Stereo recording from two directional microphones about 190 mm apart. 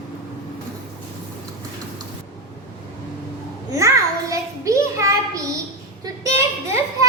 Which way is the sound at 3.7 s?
15° right (ahead or behind).